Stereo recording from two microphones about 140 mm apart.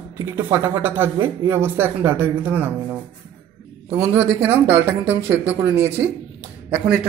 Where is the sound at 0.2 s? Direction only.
15° right (ahead or behind).